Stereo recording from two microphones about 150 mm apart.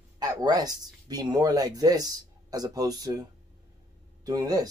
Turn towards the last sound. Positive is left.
turn(degrees=-25)  # may be behind; listen again after turning